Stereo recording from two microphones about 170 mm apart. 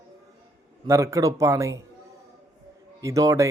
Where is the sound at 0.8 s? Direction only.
15° right (ahead or behind).